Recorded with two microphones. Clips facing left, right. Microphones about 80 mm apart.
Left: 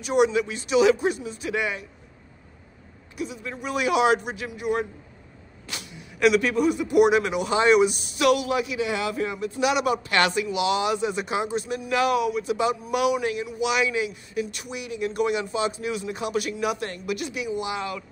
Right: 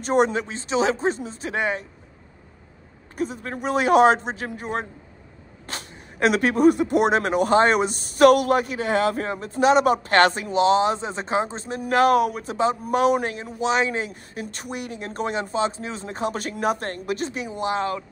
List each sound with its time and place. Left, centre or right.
0.0 s speech: right
3.2 s speech: right
11.8 s speech: right